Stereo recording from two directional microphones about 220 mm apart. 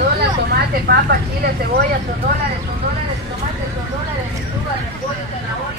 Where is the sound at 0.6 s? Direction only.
45° right (ahead or behind).